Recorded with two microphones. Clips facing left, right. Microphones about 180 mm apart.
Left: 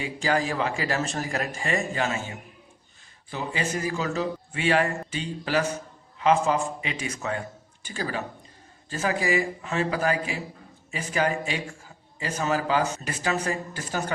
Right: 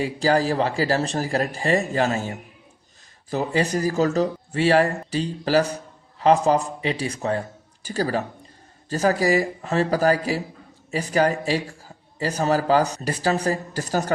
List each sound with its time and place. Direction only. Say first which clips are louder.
0.0 s speech: right 5 dB; 35° right (ahead or behind)